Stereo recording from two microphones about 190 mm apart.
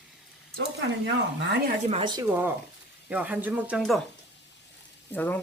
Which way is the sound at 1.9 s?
25° right (ahead or behind).